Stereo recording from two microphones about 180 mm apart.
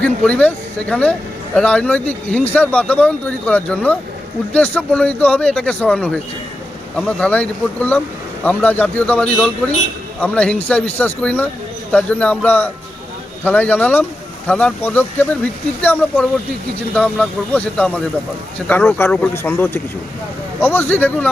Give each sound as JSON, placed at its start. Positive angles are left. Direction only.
{"t": 0.0, "sound": "a man's voice", "side_deg": 5}